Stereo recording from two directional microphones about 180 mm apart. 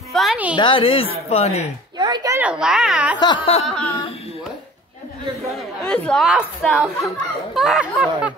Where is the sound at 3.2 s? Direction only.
30° left (ahead or behind).